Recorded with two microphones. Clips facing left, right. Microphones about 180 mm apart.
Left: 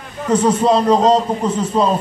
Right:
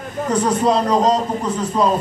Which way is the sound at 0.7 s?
25° left (ahead or behind).